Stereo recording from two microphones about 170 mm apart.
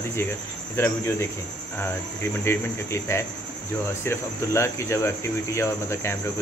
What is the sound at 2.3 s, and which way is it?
Speech, 15° left (ahead or behind).